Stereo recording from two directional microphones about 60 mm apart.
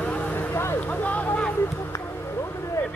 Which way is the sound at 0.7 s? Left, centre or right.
Left.